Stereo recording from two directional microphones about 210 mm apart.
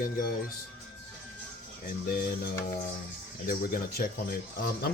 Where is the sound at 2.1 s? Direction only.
45° left (ahead or behind).